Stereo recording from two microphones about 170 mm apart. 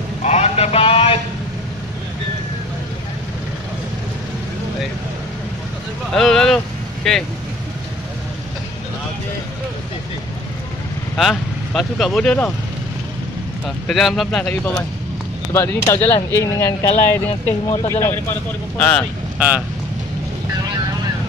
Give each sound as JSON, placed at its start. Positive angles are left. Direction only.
{"t": 0.2, "sound": "a sound", "side_deg": 40}
{"t": 6.1, "sound": "speech", "side_deg": 5}
{"t": 11.1, "sound": "speech", "side_deg": 0}
{"t": 13.7, "sound": "speech", "side_deg": 0}
{"t": 18.8, "sound": "speech", "side_deg": 5}
{"t": 19.3, "sound": "speech", "side_deg": -10}